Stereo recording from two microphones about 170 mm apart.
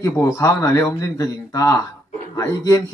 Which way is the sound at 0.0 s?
15° left (ahead or behind).